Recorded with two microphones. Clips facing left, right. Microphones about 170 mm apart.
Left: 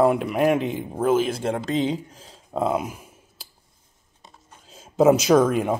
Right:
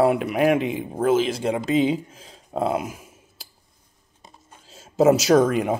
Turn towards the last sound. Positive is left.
turn(degrees=0)  # may be behind; listen again after turning